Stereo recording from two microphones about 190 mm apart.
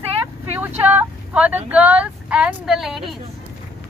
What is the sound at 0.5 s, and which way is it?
Speech, 10° right (ahead or behind).